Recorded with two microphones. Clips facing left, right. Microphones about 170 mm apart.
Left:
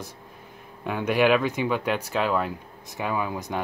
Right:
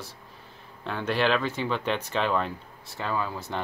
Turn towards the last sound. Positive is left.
turn(degrees=15)  # may be behind; listen again after turning